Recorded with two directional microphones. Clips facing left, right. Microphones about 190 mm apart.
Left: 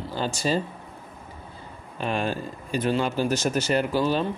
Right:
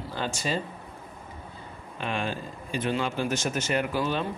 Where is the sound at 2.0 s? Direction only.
40° left (ahead or behind).